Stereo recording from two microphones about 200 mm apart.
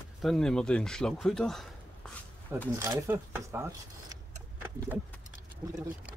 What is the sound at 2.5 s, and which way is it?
Speech, 10° right (ahead or behind).